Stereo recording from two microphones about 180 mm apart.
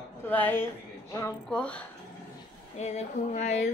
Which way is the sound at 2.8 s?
40° left (ahead or behind).